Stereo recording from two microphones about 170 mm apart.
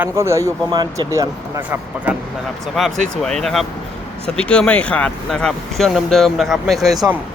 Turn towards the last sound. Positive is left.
turn(degrees=0)  # may be behind; listen again after turning